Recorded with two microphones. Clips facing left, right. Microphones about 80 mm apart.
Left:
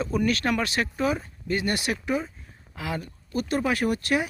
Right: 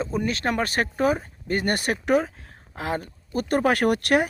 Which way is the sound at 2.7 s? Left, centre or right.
Right.